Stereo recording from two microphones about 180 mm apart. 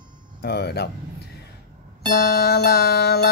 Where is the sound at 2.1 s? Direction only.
60° left (ahead or behind).